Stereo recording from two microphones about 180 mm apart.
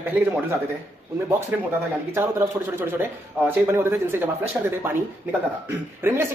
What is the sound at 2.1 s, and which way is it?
Speech, 15° right (ahead or behind).